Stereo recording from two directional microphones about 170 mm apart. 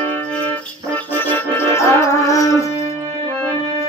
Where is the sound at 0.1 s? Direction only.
10° left (ahead or behind).